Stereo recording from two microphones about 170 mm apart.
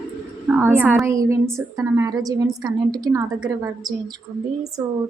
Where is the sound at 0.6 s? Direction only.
10° right (ahead or behind).